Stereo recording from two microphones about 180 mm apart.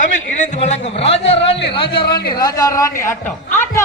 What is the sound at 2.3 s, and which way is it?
A woman's voice, 20° left (ahead or behind).